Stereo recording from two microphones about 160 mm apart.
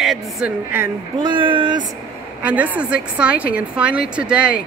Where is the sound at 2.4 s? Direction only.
10° right (ahead or behind).